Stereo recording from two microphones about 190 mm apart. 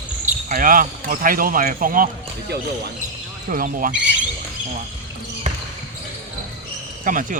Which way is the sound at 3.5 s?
45° right (ahead or behind).